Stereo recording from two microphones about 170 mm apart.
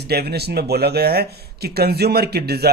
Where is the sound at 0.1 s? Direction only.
70° right (ahead or behind).